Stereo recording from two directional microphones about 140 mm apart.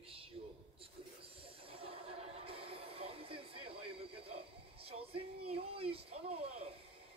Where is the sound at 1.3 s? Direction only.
40° right (ahead or behind).